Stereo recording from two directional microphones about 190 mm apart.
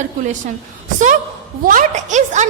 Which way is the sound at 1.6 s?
45° right (ahead or behind).